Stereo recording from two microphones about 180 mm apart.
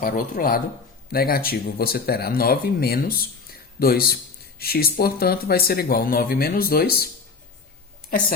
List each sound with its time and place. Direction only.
0.0 s speech: 50° left (ahead or behind)